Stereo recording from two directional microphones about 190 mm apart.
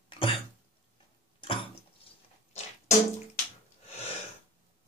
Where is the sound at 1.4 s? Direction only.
25° left (ahead or behind).